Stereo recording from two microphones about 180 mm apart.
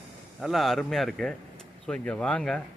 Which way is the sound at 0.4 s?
Centre (ahead or behind).